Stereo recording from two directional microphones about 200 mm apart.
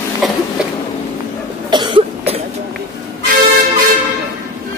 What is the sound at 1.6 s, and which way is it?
Cough, 20° right (ahead or behind).